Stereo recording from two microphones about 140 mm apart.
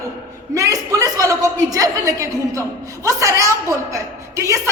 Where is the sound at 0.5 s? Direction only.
25° right (ahead or behind).